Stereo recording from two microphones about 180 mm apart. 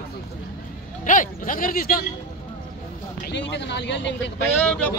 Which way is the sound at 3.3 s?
75° left (ahead or behind).